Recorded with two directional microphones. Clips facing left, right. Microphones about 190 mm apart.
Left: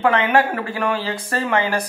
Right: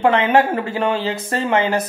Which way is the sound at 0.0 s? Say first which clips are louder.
Right 2 dB; 25° right (ahead or behind).